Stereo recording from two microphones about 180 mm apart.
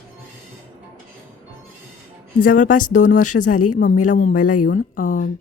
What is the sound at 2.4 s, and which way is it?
Speech, 45° left (ahead or behind).